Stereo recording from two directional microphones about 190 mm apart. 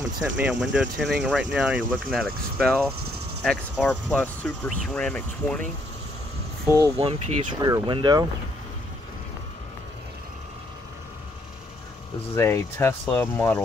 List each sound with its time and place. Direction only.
0.4 s speech: 5° right (ahead or behind)
6.7 s speech: 10° right (ahead or behind)
7.0 s speech: 30° right (ahead or behind)
12.4 s speech: 15° left (ahead or behind)